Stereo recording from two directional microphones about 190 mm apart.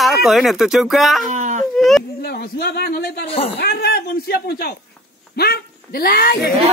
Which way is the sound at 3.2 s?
30° left (ahead or behind).